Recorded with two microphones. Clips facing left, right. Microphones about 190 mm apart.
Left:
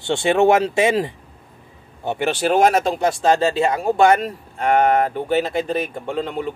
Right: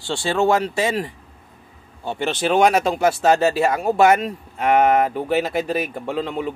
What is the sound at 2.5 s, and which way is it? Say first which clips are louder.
Speech: right 1 dB; centre (ahead or behind).